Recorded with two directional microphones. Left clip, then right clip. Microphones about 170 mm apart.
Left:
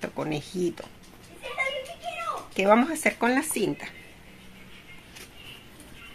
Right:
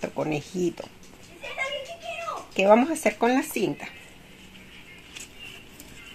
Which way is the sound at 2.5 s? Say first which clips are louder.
Right 3 dB; 30° right (ahead or behind).